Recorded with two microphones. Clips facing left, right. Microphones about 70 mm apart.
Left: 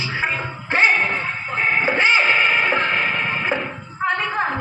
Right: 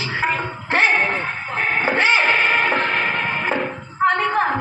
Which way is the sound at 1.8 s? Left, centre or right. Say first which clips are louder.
Right 1 dB; right.